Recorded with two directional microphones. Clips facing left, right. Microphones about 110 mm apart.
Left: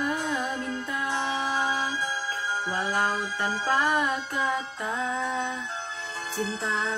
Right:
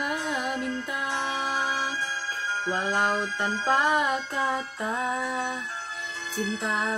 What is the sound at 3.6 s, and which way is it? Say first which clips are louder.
Music: right 2 dB; 20° right (ahead or behind).